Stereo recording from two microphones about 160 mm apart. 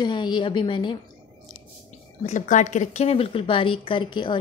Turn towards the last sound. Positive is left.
turn(degrees=30)  # may be behind; listen again after turning